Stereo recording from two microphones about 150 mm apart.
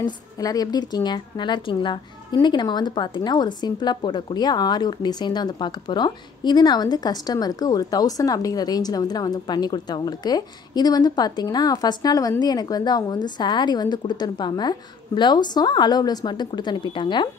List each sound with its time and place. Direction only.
0.0 s a woman's voice: 25° left (ahead or behind)